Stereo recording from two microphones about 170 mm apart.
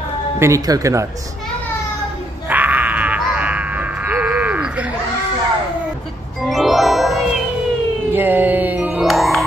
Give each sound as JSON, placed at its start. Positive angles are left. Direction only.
{"t": 0.4, "sound": "speech", "side_deg": -20}
{"t": 2.5, "sound": "a sound", "side_deg": -10}
{"t": 6.4, "sound": "music", "side_deg": 0}